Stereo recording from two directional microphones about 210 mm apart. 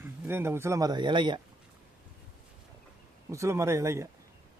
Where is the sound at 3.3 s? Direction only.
15° right (ahead or behind).